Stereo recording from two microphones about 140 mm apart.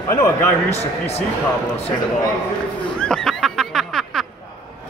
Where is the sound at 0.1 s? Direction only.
20° left (ahead or behind).